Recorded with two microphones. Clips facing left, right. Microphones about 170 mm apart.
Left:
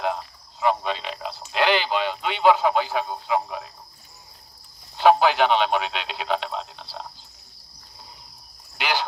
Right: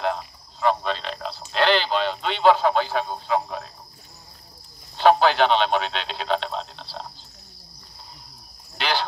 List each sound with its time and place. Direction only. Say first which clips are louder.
0.6 s a sound: right 1 dB; 10° left (ahead or behind)
4.9 s radio: even; 10° left (ahead or behind)
8.7 s cricket: right 1 dB; 10° left (ahead or behind)